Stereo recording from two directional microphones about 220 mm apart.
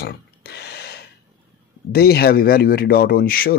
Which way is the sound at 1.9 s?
45° left (ahead or behind).